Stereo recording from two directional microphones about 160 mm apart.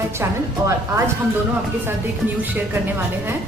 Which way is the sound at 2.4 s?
10° right (ahead or behind).